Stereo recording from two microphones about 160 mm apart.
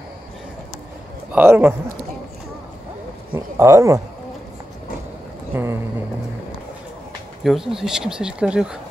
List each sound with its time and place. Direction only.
1.3 s speech: 10° right (ahead or behind)
3.3 s speech: 20° right (ahead or behind)
5.5 s speech: 15° right (ahead or behind)
7.4 s speech: centre (ahead or behind)